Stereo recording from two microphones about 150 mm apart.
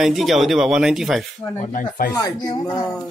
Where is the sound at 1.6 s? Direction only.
60° left (ahead or behind).